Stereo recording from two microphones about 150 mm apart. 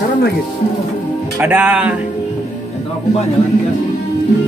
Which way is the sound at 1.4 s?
10° right (ahead or behind).